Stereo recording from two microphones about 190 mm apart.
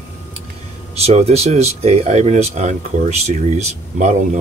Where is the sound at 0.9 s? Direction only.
35° right (ahead or behind).